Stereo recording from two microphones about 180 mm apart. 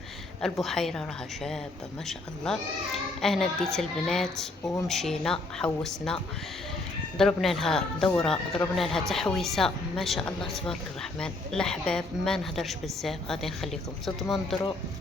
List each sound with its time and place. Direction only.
0.6 s speech: centre (ahead or behind)
2.0 s speech: centre (ahead or behind)
7.2 s speech: centre (ahead or behind)